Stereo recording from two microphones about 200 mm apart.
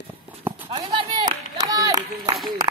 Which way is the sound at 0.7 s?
25° right (ahead or behind).